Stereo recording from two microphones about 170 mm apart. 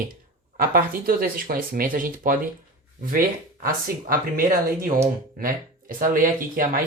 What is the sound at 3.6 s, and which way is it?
Speech, 55° right (ahead or behind).